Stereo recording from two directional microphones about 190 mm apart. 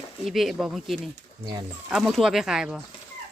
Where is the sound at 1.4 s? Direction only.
25° right (ahead or behind).